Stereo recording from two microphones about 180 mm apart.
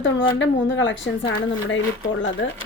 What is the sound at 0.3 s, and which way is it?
Speech, 90° left.